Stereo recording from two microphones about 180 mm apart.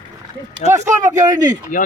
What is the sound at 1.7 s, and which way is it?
Speech, 50° left (ahead or behind).